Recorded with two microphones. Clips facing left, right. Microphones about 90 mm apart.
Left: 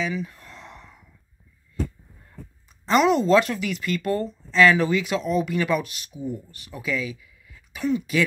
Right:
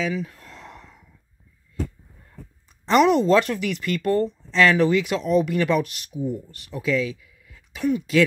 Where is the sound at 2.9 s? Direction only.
55° right (ahead or behind).